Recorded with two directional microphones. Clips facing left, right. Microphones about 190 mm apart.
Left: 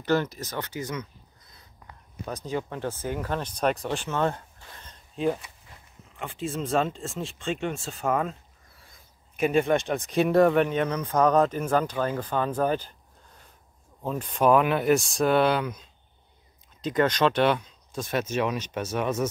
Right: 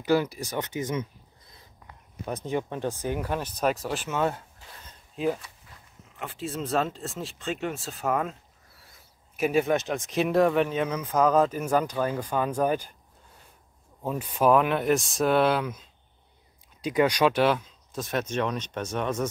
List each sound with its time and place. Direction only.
0.0 s speech: 10° right (ahead or behind)
4.8 s a sound: 5° right (ahead or behind)
6.1 s speech: centre (ahead or behind)
14.0 s speech: 10° right (ahead or behind)